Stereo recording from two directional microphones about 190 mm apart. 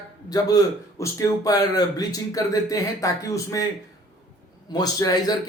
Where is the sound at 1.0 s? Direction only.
15° left (ahead or behind).